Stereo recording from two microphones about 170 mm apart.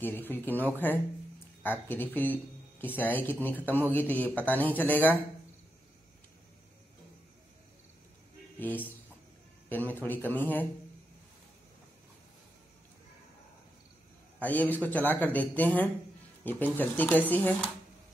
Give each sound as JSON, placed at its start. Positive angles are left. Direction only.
{"t": 0.0, "sound": "speech", "side_deg": 10}
{"t": 8.5, "sound": "speech", "side_deg": 10}
{"t": 14.4, "sound": "speech", "side_deg": 10}